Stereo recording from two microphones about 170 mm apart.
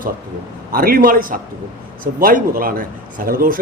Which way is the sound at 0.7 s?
60° right (ahead or behind).